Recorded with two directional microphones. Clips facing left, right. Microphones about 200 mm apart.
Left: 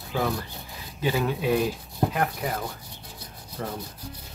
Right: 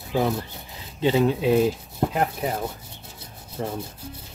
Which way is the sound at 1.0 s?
25° right (ahead or behind).